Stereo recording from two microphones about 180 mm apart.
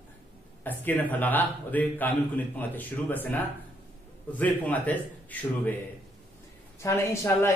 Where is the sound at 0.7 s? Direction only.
10° left (ahead or behind).